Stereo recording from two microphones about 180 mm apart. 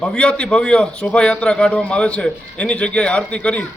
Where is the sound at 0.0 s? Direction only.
5° left (ahead or behind).